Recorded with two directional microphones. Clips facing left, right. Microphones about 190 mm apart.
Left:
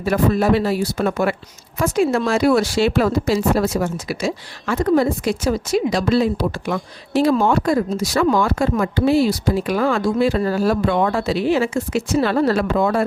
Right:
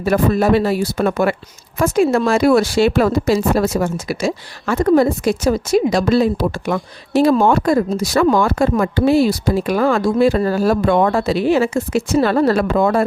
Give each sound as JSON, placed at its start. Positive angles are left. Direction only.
{"t": 0.0, "sound": "speech", "side_deg": -45}